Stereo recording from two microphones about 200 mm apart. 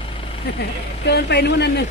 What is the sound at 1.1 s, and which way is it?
Speech, 55° left (ahead or behind).